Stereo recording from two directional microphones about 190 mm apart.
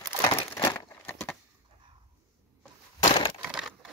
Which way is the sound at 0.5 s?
15° left (ahead or behind).